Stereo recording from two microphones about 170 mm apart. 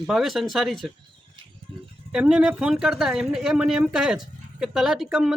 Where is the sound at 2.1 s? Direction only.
5° right (ahead or behind).